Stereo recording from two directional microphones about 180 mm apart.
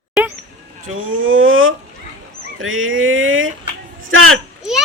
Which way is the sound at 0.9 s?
90° right.